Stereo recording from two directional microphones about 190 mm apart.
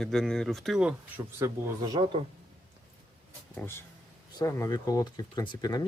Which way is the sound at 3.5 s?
10° left (ahead or behind).